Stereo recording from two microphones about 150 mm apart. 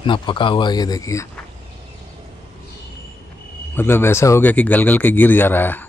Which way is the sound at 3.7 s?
15° left (ahead or behind).